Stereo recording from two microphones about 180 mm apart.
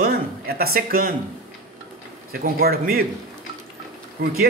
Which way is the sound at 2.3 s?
60° right (ahead or behind).